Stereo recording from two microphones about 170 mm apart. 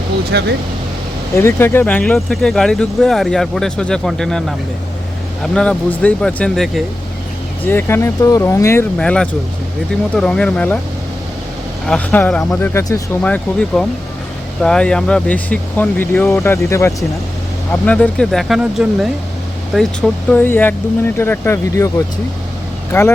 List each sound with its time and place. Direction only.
0.3 s speech: 75° right (ahead or behind)
1.4 s speech: 15° left (ahead or behind)
9.0 s speech: 5° left (ahead or behind)
11.9 s speech: 10° left (ahead or behind)